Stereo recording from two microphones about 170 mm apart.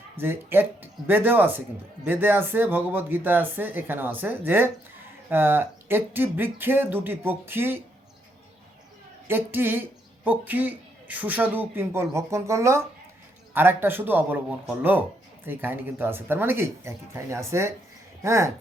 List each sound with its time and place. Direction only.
0.2 s speech: 10° right (ahead or behind)
9.2 s speech: 10° right (ahead or behind)